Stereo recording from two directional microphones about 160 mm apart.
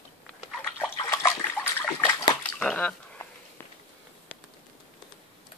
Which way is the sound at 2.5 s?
10° left (ahead or behind).